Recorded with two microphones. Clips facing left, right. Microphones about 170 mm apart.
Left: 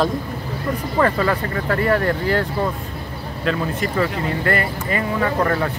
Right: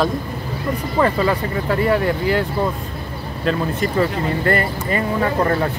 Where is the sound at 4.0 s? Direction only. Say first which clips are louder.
Right 2 dB; 30° right (ahead or behind).